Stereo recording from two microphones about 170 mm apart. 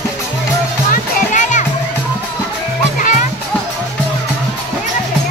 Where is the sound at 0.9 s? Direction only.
50° left (ahead or behind).